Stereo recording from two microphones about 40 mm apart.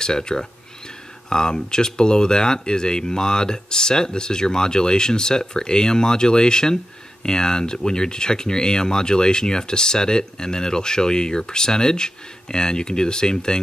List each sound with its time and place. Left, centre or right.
0.0 s speech: centre